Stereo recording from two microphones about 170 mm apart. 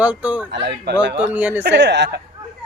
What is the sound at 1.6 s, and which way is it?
Speech, 90° right.